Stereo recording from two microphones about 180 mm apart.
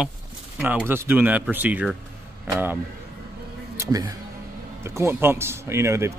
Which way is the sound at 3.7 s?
20° right (ahead or behind).